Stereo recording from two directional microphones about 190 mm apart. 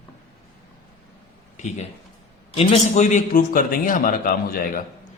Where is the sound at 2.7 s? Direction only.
35° left (ahead or behind).